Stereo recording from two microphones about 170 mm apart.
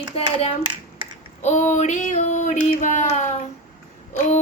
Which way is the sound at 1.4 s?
45° left (ahead or behind).